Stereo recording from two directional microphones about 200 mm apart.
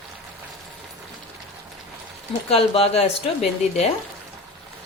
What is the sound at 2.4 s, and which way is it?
Speech, 30° left (ahead or behind).